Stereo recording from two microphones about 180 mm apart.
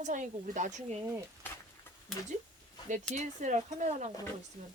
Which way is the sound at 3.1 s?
45° right (ahead or behind).